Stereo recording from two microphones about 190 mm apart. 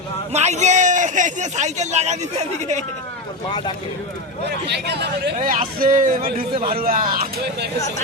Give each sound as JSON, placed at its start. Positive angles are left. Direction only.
{"t": 0.3, "sound": "a man's voice", "side_deg": -35}
{"t": 4.4, "sound": "speech", "side_deg": -60}